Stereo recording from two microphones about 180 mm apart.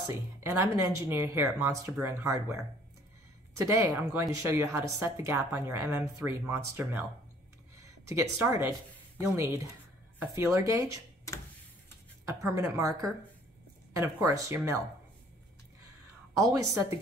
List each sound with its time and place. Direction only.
0.0 s speech: 15° right (ahead or behind)
12.3 s speech: 15° right (ahead or behind)